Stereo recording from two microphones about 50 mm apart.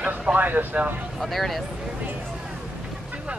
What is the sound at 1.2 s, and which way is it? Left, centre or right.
Speech, centre.